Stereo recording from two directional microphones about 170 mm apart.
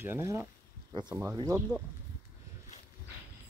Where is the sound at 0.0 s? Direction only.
15° right (ahead or behind).